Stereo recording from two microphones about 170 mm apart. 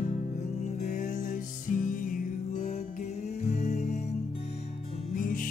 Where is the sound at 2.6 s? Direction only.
40° left (ahead or behind).